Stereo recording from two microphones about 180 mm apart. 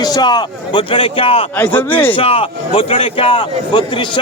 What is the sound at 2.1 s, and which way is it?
A man's voice, 30° left (ahead or behind).